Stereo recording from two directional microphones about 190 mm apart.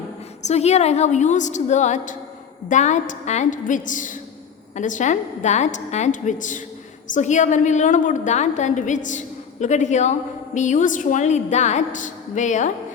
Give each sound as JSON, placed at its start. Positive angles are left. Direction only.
{"t": 0.4, "sound": "a woman's voice", "side_deg": 35}